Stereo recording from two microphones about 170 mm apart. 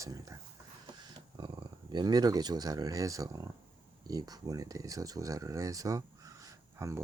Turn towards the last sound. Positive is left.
turn(degrees=-20)  # may be behind; listen again after turning